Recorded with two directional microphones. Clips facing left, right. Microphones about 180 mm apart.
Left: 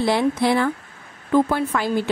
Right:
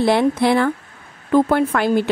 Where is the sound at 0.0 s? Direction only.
60° right (ahead or behind).